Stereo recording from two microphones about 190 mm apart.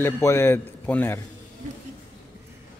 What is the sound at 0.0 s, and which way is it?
A man's voice, 15° left (ahead or behind).